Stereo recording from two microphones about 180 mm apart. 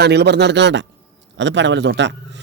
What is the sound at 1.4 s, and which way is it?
Speech, 90° right.